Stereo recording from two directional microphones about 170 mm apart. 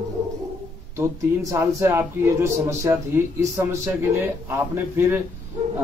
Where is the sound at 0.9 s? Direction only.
15° right (ahead or behind).